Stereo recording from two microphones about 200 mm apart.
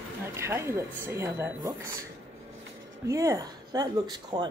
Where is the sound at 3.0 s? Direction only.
15° right (ahead or behind).